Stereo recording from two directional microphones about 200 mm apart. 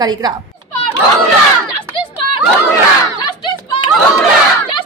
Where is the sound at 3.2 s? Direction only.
25° left (ahead or behind).